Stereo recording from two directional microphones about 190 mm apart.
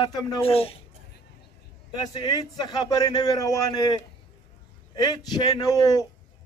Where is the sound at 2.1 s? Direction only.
20° left (ahead or behind).